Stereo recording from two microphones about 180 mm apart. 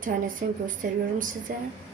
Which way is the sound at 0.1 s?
55° right (ahead or behind).